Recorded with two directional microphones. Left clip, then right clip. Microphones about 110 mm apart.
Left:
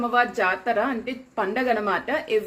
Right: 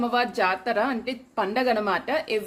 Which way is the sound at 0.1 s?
25° right (ahead or behind).